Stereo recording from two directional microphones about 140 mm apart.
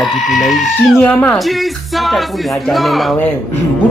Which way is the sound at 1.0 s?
10° left (ahead or behind).